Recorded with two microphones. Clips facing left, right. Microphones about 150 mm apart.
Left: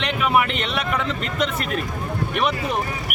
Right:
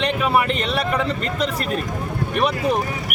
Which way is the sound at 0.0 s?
35° right (ahead or behind).